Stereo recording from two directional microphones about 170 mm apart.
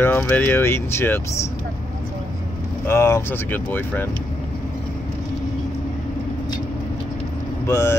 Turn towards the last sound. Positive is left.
turn(degrees=15)  # may be behind; listen again after turning